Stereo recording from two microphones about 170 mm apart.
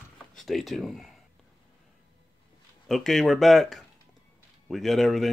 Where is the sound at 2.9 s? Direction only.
Centre (ahead or behind).